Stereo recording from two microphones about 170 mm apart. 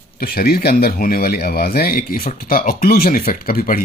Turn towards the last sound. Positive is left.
turn(degrees=60)  # may be behind; listen again after turning